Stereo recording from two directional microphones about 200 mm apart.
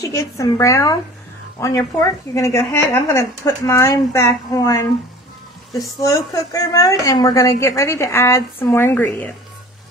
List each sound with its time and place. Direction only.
0.0 s speech: 15° left (ahead or behind)
6.0 s speech: 15° left (ahead or behind)